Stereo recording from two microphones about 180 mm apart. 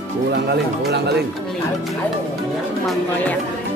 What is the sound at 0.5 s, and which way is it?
Speech, 65° right (ahead or behind).